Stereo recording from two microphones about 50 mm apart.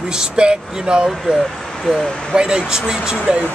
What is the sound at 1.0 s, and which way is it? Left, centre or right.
Speech, centre.